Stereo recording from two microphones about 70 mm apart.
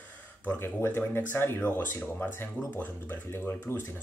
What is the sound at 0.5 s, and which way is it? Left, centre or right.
Speech, left.